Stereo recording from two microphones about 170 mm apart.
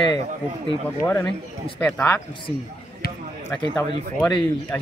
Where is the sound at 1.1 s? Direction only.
10° left (ahead or behind).